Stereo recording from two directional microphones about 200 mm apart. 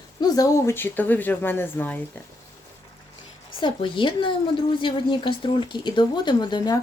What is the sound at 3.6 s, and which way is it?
A woman's voice, 25° left (ahead or behind).